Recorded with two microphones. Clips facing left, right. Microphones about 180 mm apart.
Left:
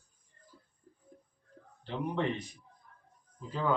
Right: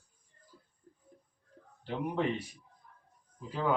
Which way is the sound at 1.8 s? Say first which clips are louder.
Right 1 dB; 10° right (ahead or behind).